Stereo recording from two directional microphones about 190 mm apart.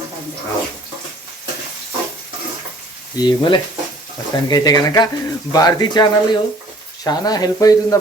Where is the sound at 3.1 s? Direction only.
25° left (ahead or behind).